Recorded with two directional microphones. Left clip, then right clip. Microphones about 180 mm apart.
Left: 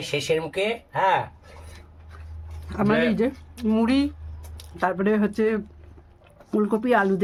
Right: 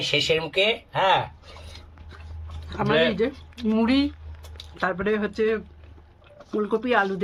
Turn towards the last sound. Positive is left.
turn(degrees=75)  # may be behind; listen again after turning